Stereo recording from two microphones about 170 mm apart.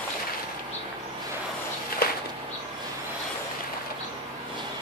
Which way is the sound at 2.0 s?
65° left (ahead or behind).